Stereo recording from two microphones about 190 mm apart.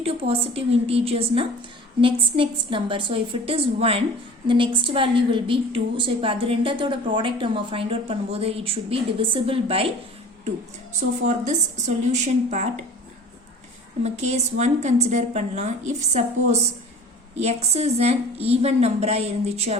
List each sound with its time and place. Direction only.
0.0 s a woman's voice: 30° right (ahead or behind)
11.2 s a woman's voice: 40° right (ahead or behind)
14.0 s a woman's voice: 35° right (ahead or behind)